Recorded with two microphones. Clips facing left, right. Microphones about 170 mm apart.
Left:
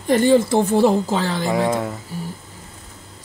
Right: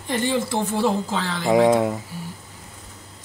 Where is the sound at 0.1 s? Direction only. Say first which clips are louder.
Left 8 dB; 45° left (ahead or behind).